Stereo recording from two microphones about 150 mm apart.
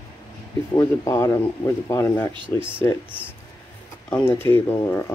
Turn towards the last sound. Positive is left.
turn(degrees=20)  # may be behind; listen again after turning